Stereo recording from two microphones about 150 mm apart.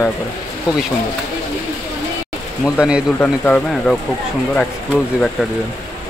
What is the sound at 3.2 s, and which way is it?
Speech, 10° left (ahead or behind).